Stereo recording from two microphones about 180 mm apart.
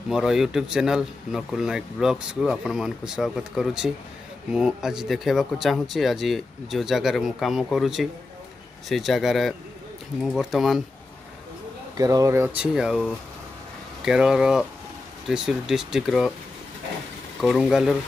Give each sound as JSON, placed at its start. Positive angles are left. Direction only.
{"t": 0.1, "sound": "speech", "side_deg": 0}
{"t": 12.0, "sound": "speech", "side_deg": -20}
{"t": 12.7, "sound": "speech", "side_deg": 0}
{"t": 17.4, "sound": "speech", "side_deg": 0}